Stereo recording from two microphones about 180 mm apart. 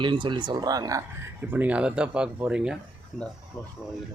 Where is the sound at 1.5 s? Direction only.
10° right (ahead or behind).